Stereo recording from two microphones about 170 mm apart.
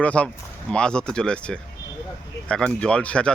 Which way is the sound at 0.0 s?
10° left (ahead or behind).